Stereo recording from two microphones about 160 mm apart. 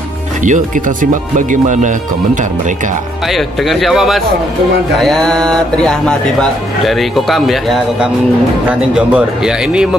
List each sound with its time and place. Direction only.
0.4 s speech: 55° right (ahead or behind)
3.3 s speech: centre (ahead or behind)